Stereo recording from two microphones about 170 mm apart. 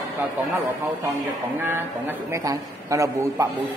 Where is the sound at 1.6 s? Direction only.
15° right (ahead or behind).